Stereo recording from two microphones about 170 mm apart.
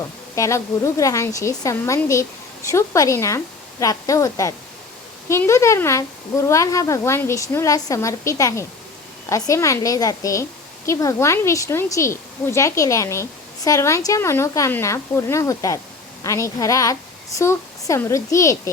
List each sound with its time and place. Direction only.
0.3 s a woman's voice: 20° left (ahead or behind)